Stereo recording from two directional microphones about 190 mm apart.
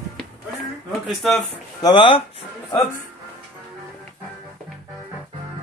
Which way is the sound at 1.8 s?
25° left (ahead or behind).